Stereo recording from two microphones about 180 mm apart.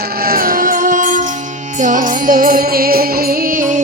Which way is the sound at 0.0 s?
55° right (ahead or behind).